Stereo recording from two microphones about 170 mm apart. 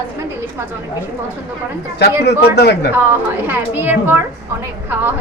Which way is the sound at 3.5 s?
10° right (ahead or behind).